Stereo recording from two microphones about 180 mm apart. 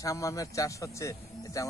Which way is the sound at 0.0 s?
20° left (ahead or behind).